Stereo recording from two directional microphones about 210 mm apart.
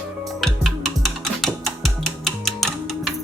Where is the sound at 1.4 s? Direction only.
Centre (ahead or behind).